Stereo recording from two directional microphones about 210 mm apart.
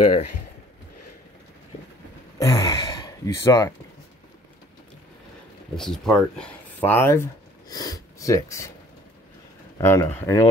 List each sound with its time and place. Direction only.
2.3 s speech: 15° left (ahead or behind)
5.8 s speech: centre (ahead or behind)
9.8 s speech: 15° left (ahead or behind)